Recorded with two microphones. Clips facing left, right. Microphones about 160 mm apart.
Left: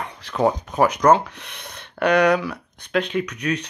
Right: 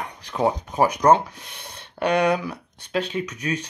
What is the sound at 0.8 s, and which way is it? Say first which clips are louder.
Speech: left 1 dB; 30° right (ahead or behind).